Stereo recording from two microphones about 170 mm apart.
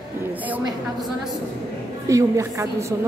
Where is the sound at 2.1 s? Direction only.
20° right (ahead or behind).